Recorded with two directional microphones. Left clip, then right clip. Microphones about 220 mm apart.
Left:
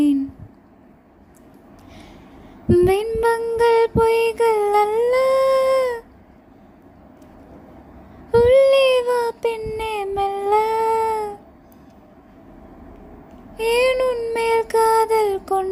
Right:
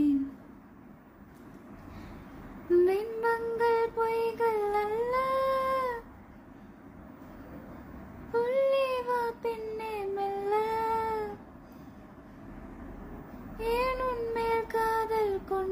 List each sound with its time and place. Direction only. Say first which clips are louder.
2.6 s music: left 9 dB; 40° left (ahead or behind)
8.3 s child singing: left 14 dB; 40° left (ahead or behind)
13.6 s child singing: left 12 dB; 40° left (ahead or behind)